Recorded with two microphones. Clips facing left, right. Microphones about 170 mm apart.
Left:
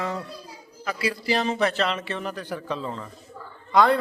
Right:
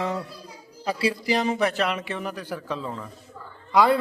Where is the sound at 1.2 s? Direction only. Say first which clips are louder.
Left 1 dB; 15° right (ahead or behind).